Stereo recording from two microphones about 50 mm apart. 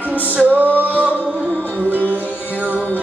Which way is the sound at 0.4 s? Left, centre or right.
Right.